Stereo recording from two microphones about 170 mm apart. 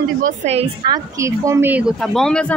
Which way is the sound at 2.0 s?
Centre (ahead or behind).